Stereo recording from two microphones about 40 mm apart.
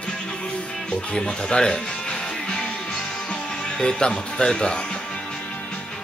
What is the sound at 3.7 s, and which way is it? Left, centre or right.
Speech, left.